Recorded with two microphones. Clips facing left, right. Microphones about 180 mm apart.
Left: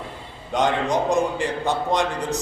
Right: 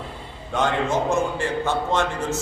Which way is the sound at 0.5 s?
15° left (ahead or behind).